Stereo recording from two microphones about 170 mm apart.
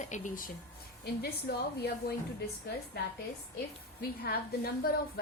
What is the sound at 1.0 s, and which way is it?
A woman's voice, 70° left (ahead or behind).